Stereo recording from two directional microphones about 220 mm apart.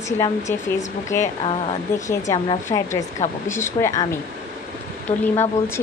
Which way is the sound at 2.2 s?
15° left (ahead or behind).